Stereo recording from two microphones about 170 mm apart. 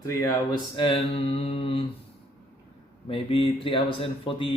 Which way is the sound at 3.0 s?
35° left (ahead or behind).